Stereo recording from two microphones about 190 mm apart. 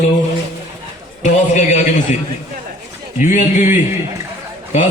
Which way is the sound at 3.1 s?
40° left (ahead or behind).